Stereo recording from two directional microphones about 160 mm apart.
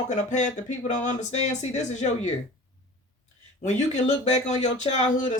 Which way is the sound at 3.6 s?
45° left (ahead or behind).